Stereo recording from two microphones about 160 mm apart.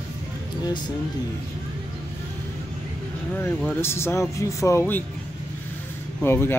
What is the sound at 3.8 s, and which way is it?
Speech, 15° left (ahead or behind).